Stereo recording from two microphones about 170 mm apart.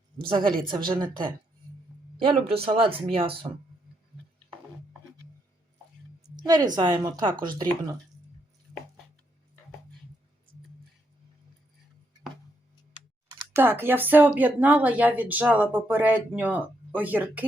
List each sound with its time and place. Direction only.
0.3 s a woman's voice: 30° right (ahead or behind)
6.4 s a woman's voice: 25° right (ahead or behind)
13.5 s speech: 10° right (ahead or behind)